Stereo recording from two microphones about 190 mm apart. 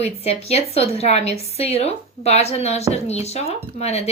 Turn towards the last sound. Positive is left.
turn(degrees=35)  # may be behind; listen again after turning